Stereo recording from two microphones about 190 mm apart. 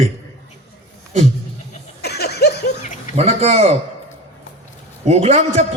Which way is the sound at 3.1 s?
35° right (ahead or behind).